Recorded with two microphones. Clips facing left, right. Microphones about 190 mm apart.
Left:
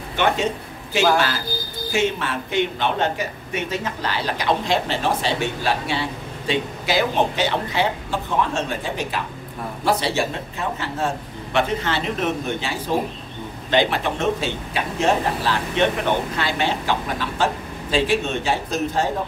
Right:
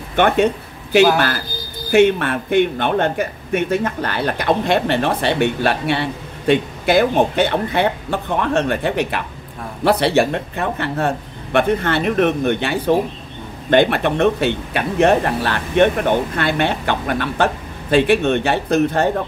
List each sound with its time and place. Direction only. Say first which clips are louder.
0.1 s a man's voice: right 6 dB; 55° right (ahead or behind)